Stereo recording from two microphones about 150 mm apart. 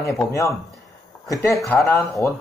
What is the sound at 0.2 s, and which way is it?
Speech, 20° left (ahead or behind).